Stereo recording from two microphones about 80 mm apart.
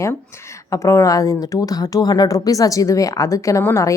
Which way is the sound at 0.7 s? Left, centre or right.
Left.